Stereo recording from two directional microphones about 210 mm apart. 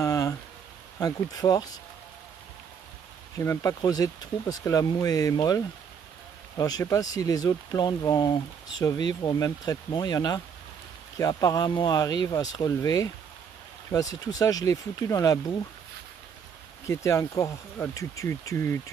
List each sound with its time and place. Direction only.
0.0 s a sound: 15° left (ahead or behind)
0.9 s speech: 15° left (ahead or behind)
3.3 s speech: 15° left (ahead or behind)
6.6 s speech: 15° left (ahead or behind)
16.8 s speech: 15° left (ahead or behind)